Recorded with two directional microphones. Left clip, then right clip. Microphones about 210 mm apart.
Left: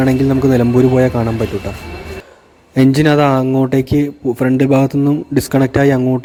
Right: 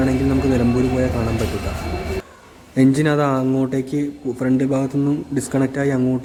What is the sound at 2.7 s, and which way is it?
Speech, 40° left (ahead or behind).